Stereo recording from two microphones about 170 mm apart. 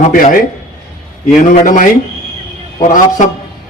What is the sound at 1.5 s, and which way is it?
A man's voice, 50° left (ahead or behind).